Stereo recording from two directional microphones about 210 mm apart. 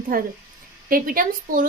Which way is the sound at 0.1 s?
40° right (ahead or behind).